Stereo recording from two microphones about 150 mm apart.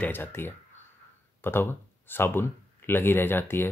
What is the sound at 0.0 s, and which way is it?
Speech, 15° left (ahead or behind).